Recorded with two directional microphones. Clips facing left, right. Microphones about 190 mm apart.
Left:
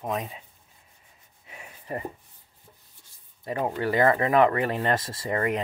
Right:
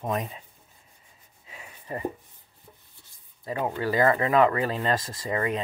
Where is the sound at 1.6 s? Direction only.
25° left (ahead or behind).